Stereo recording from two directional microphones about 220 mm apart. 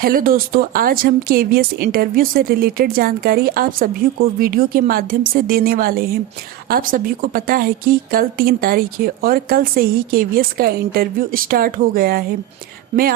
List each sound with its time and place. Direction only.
0.0 s speech: 40° right (ahead or behind)